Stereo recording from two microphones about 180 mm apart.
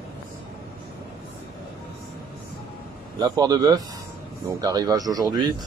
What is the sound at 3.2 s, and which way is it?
Speech, 20° right (ahead or behind).